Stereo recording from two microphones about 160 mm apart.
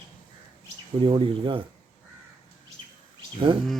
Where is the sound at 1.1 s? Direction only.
35° right (ahead or behind).